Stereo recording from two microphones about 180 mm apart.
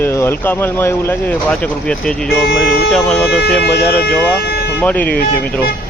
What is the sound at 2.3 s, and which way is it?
Speech, 60° left (ahead or behind).